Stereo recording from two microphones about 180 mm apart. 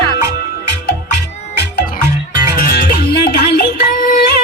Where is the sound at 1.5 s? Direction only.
65° left (ahead or behind).